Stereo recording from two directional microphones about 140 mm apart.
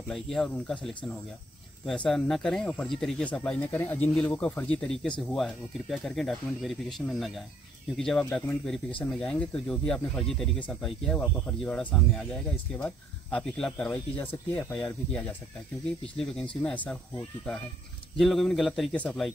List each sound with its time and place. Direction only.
0.1 s speech: centre (ahead or behind)
16.6 s speech: 10° left (ahead or behind)
18.1 s speech: centre (ahead or behind)